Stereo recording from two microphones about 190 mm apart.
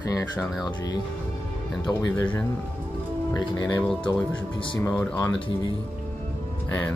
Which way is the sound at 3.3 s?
20° left (ahead or behind).